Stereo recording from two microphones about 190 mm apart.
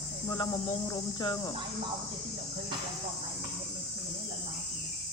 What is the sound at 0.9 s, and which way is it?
Cricket, 25° left (ahead or behind).